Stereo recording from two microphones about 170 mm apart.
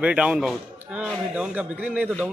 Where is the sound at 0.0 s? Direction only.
5° right (ahead or behind).